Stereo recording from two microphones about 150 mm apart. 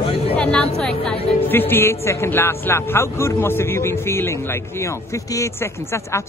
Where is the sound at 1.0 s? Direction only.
10° left (ahead or behind).